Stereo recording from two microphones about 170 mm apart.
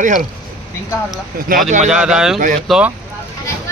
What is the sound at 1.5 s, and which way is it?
Speech, 55° right (ahead or behind).